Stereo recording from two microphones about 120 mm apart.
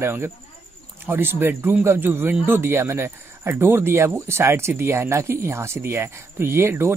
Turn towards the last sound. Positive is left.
turn(degrees=-20)  # may be behind; listen again after turning